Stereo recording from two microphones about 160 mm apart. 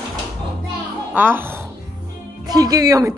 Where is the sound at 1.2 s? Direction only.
15° right (ahead or behind).